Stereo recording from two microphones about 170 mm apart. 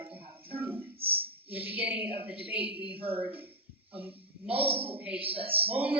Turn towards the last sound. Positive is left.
turn(degrees=-35)  # may be behind; listen again after turning